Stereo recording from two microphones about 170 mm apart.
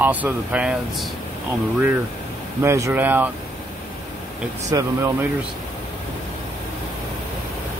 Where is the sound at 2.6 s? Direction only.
15° right (ahead or behind).